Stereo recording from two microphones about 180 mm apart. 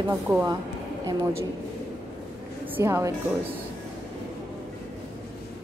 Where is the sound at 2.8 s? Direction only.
15° right (ahead or behind).